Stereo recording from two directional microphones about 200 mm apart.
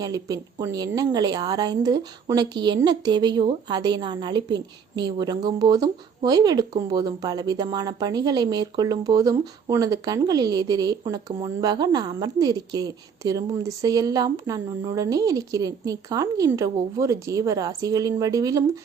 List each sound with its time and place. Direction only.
0.0 s a woman's voice: 20° right (ahead or behind)